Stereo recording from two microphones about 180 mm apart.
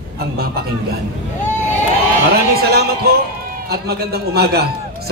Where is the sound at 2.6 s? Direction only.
60° right (ahead or behind).